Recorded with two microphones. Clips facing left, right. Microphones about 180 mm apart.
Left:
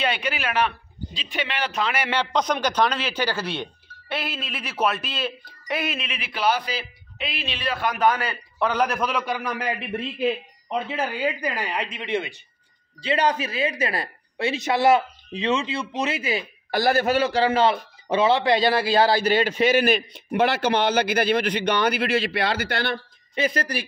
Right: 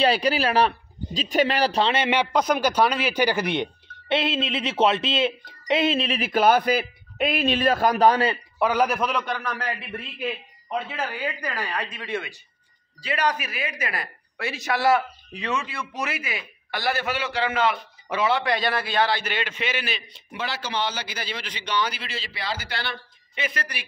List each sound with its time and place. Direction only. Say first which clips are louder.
0.0 s a man's voice: right 5 dB; 35° right (ahead or behind)
2.3 s speech: even; 5° right (ahead or behind); by 8.4 s 30° right (ahead or behind)
8.5 s a man's voice: even; 10° right (ahead or behind); by 22.9 s 55° left (ahead or behind)
23.3 s a woman's voice: left 7 dB; 35° left (ahead or behind)